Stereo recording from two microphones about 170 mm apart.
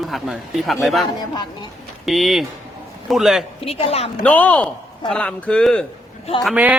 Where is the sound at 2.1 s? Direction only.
Centre (ahead or behind).